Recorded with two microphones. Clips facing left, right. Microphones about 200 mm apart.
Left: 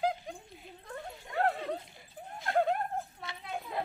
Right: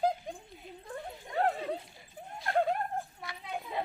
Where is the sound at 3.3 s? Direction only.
25° left (ahead or behind).